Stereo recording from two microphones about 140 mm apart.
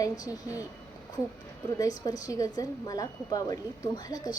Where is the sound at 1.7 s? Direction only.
30° left (ahead or behind).